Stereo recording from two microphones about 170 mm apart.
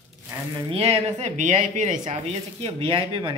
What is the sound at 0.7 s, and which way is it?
Speech, 35° right (ahead or behind).